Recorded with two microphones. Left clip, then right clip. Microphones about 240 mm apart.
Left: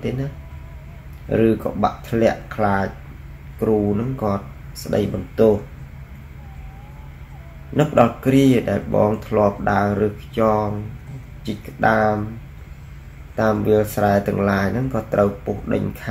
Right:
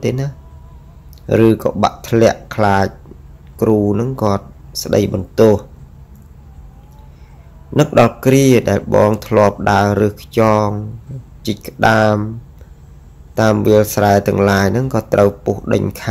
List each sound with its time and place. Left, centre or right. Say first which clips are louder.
1.3 s speech: right 6 dB; right
7.7 s speech: right 4 dB; right
13.4 s speech: right 6 dB; right